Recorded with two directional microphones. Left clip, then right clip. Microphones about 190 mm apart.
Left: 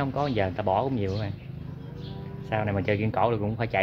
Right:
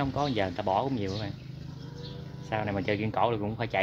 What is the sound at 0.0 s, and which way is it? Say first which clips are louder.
Speech: left 2 dB; 5° right (ahead or behind).